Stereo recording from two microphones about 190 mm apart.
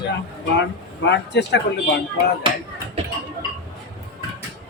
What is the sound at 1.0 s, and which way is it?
Speech, 65° left (ahead or behind).